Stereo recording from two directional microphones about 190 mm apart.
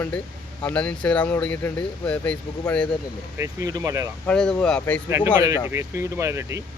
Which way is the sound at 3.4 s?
15° right (ahead or behind).